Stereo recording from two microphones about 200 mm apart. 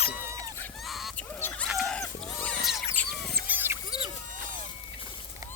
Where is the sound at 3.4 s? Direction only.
10° right (ahead or behind).